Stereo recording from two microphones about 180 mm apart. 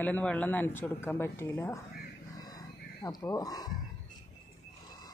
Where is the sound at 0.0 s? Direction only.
10° left (ahead or behind).